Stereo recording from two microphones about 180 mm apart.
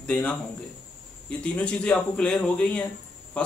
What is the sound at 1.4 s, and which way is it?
Speech, 5° left (ahead or behind).